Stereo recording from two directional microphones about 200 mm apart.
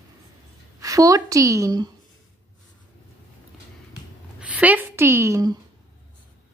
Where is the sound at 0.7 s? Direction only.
15° right (ahead or behind).